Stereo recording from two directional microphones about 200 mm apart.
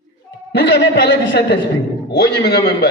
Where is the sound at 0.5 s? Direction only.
60° left (ahead or behind).